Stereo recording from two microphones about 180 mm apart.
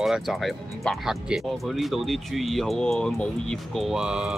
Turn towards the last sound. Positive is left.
turn(degrees=-5)  # may be behind; listen again after turning